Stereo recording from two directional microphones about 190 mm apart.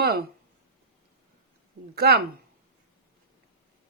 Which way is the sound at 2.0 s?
55° right (ahead or behind).